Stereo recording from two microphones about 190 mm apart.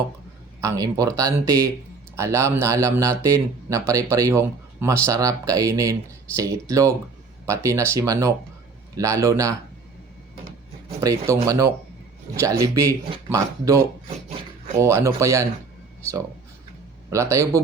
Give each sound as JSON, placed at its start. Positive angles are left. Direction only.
{"t": 0.6, "sound": "speech", "side_deg": -15}
{"t": 11.0, "sound": "speech", "side_deg": -15}
{"t": 17.1, "sound": "speech", "side_deg": -15}